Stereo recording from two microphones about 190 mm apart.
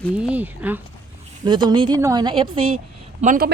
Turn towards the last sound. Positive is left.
turn(degrees=-45)  # may be behind; listen again after turning